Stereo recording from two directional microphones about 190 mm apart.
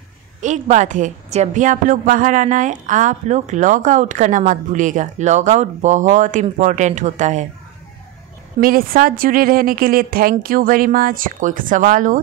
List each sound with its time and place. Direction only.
0.4 s a woman's voice: 40° right (ahead or behind)
8.5 s speech: 50° right (ahead or behind)